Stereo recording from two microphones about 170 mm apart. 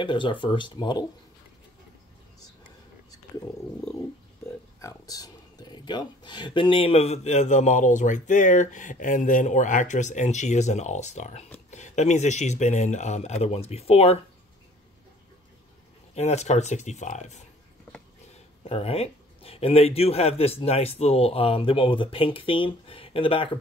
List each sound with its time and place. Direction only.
0.0 s speech: 30° left (ahead or behind)
4.7 s speech: 20° left (ahead or behind); by 14.1 s 35° left (ahead or behind)
16.2 s speech: 40° left (ahead or behind)
18.6 s speech: 35° left (ahead or behind)